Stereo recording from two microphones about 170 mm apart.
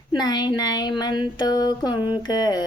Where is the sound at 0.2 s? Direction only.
25° left (ahead or behind).